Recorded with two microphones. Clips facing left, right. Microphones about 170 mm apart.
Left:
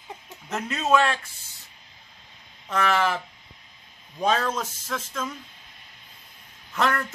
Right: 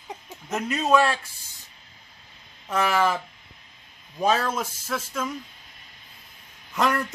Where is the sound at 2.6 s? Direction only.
10° right (ahead or behind).